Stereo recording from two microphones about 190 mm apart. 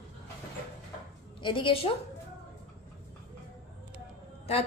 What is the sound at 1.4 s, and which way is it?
Speech, 25° left (ahead or behind).